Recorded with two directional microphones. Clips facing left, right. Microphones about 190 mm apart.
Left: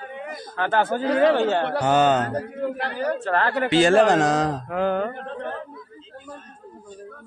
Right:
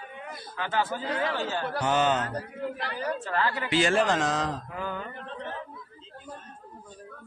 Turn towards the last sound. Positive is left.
turn(degrees=55)  # may be behind; listen again after turning